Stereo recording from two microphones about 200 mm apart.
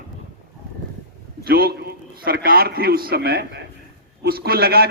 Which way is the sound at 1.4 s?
50° right (ahead or behind).